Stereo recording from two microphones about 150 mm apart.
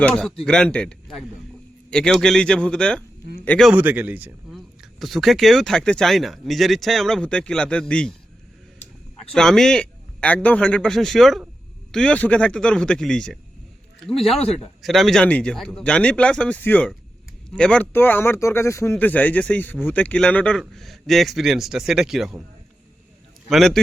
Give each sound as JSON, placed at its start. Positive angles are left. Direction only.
{"t": 0.0, "sound": "speech", "side_deg": 5}
{"t": 3.7, "sound": "speech", "side_deg": -10}
{"t": 9.3, "sound": "speech", "side_deg": 5}
{"t": 14.2, "sound": "speech", "side_deg": 40}
{"t": 14.8, "sound": "speech", "side_deg": 0}
{"t": 23.5, "sound": "speech", "side_deg": 0}